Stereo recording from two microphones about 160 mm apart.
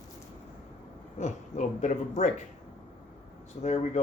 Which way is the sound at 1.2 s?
45° left (ahead or behind).